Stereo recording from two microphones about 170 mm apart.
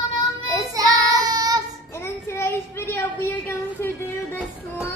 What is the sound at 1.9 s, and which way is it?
Child singing, 15° left (ahead or behind).